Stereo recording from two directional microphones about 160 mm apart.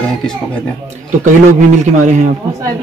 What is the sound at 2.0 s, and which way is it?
Speech, 50° right (ahead or behind).